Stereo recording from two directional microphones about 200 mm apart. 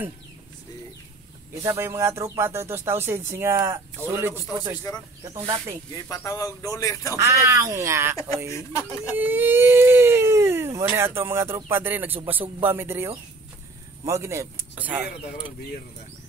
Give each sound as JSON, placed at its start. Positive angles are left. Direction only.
{"t": 1.6, "sound": "speech", "side_deg": -15}
{"t": 5.9, "sound": "speech", "side_deg": 15}
{"t": 7.2, "sound": "speech", "side_deg": -15}
{"t": 8.5, "sound": "speech", "side_deg": 15}
{"t": 9.1, "sound": "speech", "side_deg": -10}